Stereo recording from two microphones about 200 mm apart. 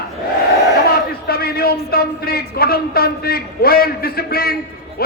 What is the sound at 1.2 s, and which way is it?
A man's voice, 50° left (ahead or behind).